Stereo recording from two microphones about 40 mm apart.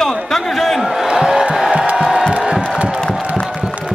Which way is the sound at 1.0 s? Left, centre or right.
Centre.